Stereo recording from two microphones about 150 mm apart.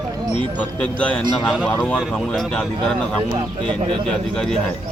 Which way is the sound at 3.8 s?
35° right (ahead or behind).